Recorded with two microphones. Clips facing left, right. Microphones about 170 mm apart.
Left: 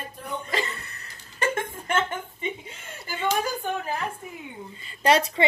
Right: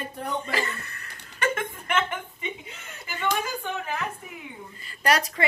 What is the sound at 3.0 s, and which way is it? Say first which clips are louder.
A woman's voice: left 2 dB; 35° left (ahead or behind).